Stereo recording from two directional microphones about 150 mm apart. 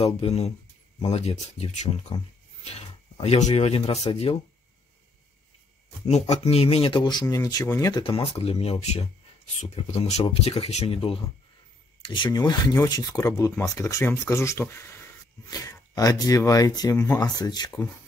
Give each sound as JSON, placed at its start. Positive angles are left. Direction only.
{"t": 0.0, "sound": "speech", "side_deg": 40}
{"t": 6.0, "sound": "speech", "side_deg": 45}
{"t": 8.0, "sound": "speech", "side_deg": 35}